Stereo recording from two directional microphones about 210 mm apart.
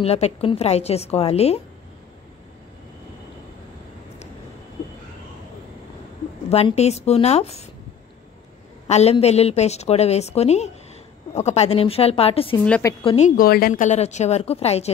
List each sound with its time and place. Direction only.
0.0 s a woman's voice: 30° left (ahead or behind)
6.5 s a woman's voice: 30° left (ahead or behind)
8.8 s a woman's voice: 30° left (ahead or behind)
12.6 s a woman's voice: 5° left (ahead or behind)
13.0 s a woman's voice: 25° left (ahead or behind)
13.4 s a woman's voice: 45° left (ahead or behind)